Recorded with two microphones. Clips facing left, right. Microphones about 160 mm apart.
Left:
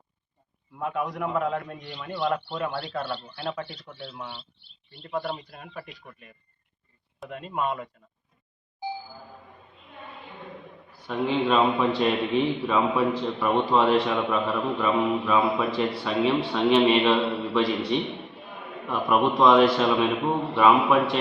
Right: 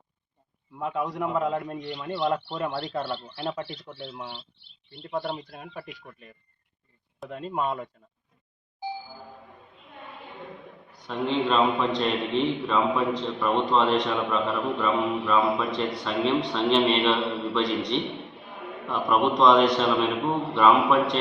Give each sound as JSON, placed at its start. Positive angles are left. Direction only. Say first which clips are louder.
{"t": 0.8, "sound": "a man's voice", "louder": "even", "side_deg": -25}
{"t": 5.3, "sound": "a man's voice", "louder": "right 1 dB", "side_deg": -5}
{"t": 7.3, "sound": "speech", "louder": "even", "side_deg": -35}
{"t": 11.0, "sound": "a man's voice", "louder": "left 1 dB", "side_deg": 5}